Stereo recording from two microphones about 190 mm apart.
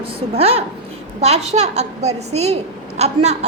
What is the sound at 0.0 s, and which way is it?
A woman's voice, 30° right (ahead or behind).